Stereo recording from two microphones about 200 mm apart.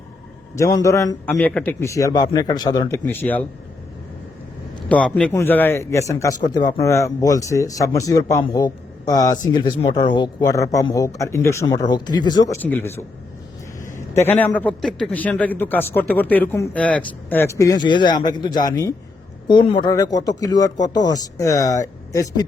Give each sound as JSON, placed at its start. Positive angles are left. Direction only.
{"t": 0.5, "sound": "a man's voice", "side_deg": 15}
{"t": 3.0, "sound": "a man's voice", "side_deg": 10}
{"t": 4.9, "sound": "a man's voice", "side_deg": 5}